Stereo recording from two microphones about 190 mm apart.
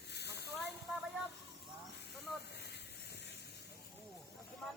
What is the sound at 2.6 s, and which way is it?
Hiss, 60° left (ahead or behind).